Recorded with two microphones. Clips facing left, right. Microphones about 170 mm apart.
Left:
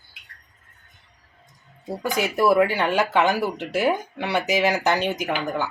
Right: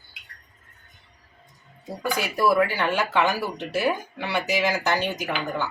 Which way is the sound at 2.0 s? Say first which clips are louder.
Left 2 dB; 20° left (ahead or behind).